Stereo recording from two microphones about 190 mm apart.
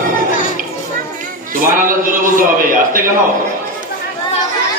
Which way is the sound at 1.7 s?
45° right (ahead or behind).